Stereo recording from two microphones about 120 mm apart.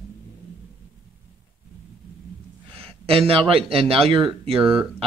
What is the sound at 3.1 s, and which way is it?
Speech, 50° right (ahead or behind).